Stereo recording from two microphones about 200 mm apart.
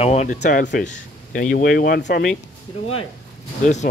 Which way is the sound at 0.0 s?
35° left (ahead or behind).